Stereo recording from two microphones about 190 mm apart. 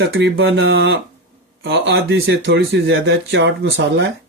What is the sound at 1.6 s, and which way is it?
Speech, 65° right (ahead or behind).